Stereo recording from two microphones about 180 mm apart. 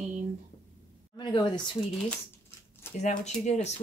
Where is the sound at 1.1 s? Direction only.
25° left (ahead or behind).